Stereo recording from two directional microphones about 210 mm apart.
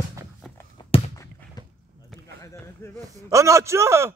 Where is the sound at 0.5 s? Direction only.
20° left (ahead or behind).